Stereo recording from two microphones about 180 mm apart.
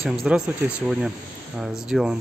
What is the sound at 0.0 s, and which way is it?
Speech, 5° right (ahead or behind).